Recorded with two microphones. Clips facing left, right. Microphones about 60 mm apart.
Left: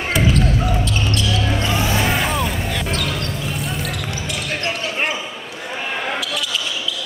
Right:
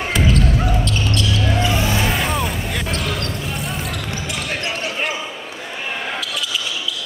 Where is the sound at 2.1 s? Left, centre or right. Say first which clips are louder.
Left 1 dB; centre.